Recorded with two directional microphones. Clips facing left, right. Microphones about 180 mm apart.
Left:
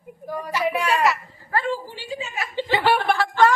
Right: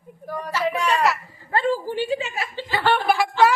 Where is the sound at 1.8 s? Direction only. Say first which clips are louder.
Right 8 dB; 55° right (ahead or behind).